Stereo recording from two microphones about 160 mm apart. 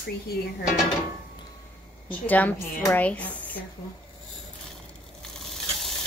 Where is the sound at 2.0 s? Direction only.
10° left (ahead or behind).